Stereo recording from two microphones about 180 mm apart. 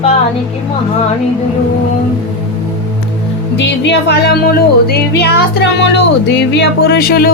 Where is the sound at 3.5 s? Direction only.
75° left (ahead or behind).